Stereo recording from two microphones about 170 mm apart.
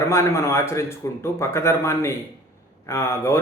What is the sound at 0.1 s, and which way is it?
Speech, 15° left (ahead or behind).